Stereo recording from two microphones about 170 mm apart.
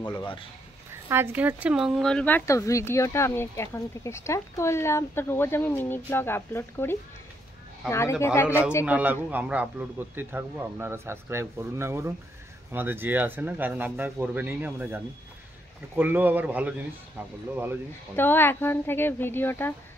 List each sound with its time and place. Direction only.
0.2 s speech: 30° left (ahead or behind)
1.0 s speech: 15° right (ahead or behind); by 8.3 s 15° left (ahead or behind)
8.8 s a man's voice: 10° right (ahead or behind)
18.1 s speech: 10° left (ahead or behind)